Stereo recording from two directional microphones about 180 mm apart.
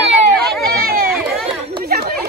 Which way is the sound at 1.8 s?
60° right (ahead or behind).